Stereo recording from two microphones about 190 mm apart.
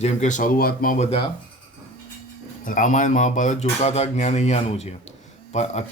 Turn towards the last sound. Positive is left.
turn(degrees=35)  # may be behind; listen again after turning